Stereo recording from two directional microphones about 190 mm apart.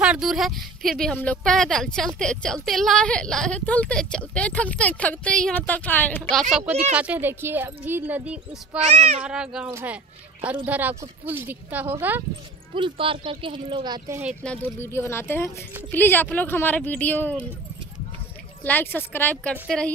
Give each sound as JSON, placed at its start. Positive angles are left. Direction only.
{"t": 0.0, "sound": "speech", "side_deg": -5}
{"t": 6.7, "sound": "a child's voice", "side_deg": -35}
{"t": 7.0, "sound": "a woman's voice", "side_deg": -10}
{"t": 8.7, "sound": "a child's voice", "side_deg": -35}
{"t": 9.2, "sound": "a woman's voice", "side_deg": -5}
{"t": 12.7, "sound": "speech", "side_deg": -25}
{"t": 14.4, "sound": "speech", "side_deg": 10}
{"t": 18.6, "sound": "speech", "side_deg": 10}